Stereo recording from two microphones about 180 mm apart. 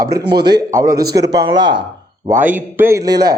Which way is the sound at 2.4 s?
10° right (ahead or behind).